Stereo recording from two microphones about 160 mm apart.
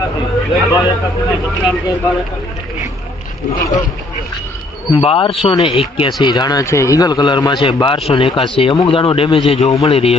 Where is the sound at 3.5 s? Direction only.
20° left (ahead or behind).